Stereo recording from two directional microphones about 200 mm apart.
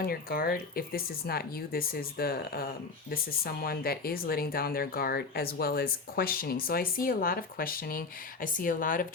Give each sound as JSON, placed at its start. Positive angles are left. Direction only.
{"t": 0.0, "sound": "speech", "side_deg": 50}